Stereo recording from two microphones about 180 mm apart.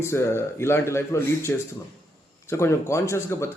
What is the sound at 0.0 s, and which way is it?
A man's voice, 15° left (ahead or behind).